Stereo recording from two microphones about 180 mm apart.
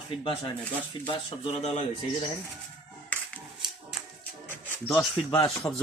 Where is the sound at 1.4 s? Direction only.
35° left (ahead or behind).